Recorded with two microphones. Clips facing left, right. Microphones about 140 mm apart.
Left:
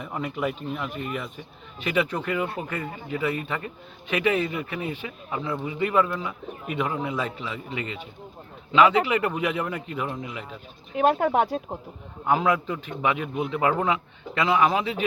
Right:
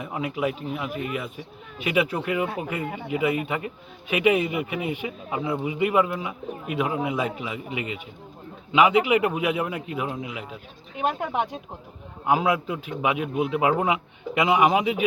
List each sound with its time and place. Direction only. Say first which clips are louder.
0.0 s speech: right 2 dB; 5° right (ahead or behind)
10.9 s speech: left 5 dB; 40° left (ahead or behind)
12.2 s speech: even; 10° right (ahead or behind)